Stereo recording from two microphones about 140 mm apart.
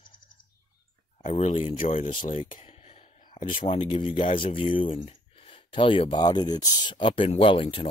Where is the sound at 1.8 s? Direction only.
65° left (ahead or behind).